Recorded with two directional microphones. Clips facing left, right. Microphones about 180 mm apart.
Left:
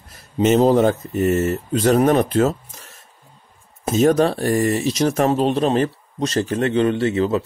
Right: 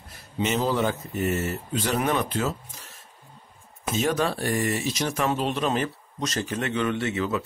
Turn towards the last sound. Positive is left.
turn(degrees=35)  # may be behind; listen again after turning